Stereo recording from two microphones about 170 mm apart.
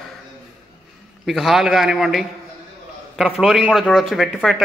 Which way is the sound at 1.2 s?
Centre (ahead or behind).